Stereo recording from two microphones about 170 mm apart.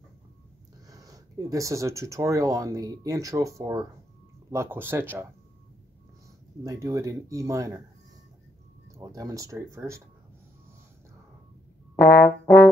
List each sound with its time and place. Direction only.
0.8 s speech: 20° right (ahead or behind)
6.6 s speech: 20° right (ahead or behind)
8.9 s speech: 20° right (ahead or behind)
12.0 s brass instrument: 85° left